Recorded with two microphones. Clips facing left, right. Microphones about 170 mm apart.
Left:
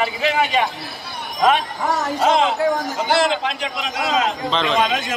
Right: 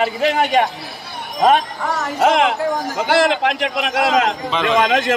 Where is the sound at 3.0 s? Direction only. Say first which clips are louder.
Right 4 dB; 90° right.